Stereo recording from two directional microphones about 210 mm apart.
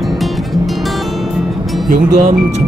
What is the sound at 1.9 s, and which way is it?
Speech, 35° right (ahead or behind).